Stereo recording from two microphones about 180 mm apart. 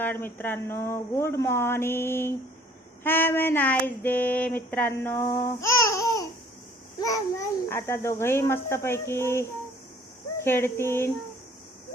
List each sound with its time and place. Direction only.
0.0 s speech: 10° left (ahead or behind)
7.0 s babbling: 20° left (ahead or behind)
8.2 s speech: 15° left (ahead or behind)